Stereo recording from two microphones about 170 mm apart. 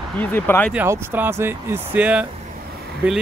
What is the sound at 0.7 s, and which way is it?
Speech, 10° right (ahead or behind).